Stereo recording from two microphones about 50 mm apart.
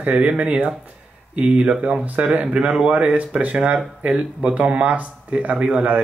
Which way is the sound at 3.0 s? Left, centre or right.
Right.